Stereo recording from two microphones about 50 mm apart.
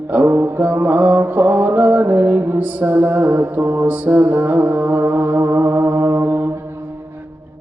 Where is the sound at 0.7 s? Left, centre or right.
Right.